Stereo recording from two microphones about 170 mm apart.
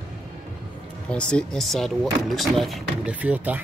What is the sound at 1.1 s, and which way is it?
Speech, 5° left (ahead or behind).